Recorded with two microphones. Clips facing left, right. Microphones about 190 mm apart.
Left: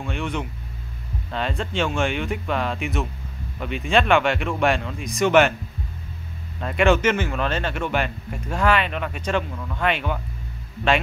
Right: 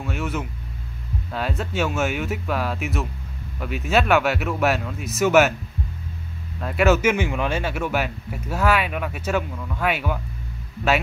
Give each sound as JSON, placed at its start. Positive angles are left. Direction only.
{"t": 0.0, "sound": "vehicle", "side_deg": -5}
{"t": 1.3, "sound": "speech", "side_deg": -5}
{"t": 6.6, "sound": "speech", "side_deg": -5}